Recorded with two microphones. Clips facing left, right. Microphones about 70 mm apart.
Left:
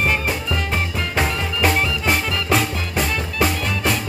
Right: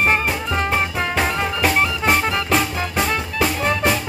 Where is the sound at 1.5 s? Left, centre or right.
Centre.